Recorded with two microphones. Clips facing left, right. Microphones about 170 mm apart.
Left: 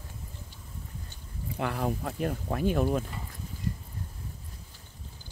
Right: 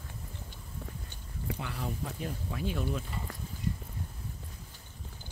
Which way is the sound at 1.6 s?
55° left (ahead or behind).